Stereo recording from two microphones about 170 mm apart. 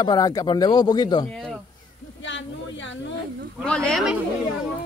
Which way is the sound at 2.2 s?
90° left.